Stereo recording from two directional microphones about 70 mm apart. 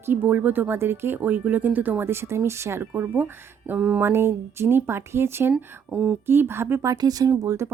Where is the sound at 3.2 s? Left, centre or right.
Centre.